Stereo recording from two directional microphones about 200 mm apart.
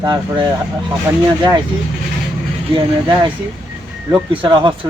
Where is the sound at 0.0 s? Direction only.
20° right (ahead or behind).